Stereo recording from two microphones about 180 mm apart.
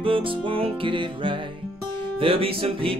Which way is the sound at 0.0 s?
30° right (ahead or behind).